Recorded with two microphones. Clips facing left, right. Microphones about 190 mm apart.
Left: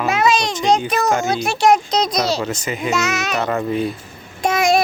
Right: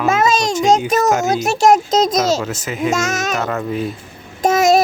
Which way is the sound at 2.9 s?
45° right (ahead or behind).